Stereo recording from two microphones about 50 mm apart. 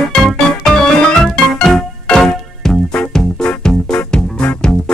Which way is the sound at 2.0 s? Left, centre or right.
Left.